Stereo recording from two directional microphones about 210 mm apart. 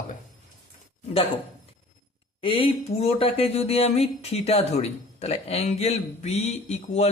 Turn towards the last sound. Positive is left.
turn(degrees=30)  # may be behind; listen again after turning